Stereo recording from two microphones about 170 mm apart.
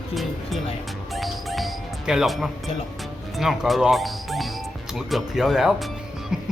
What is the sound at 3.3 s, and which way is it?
Speech, centre (ahead or behind).